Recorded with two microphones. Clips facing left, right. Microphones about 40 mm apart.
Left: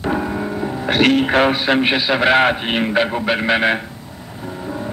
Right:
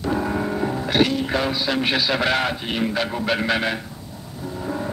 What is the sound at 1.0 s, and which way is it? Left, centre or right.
Speech, left.